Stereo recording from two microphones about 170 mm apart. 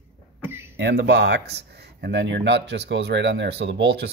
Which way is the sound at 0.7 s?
90° right.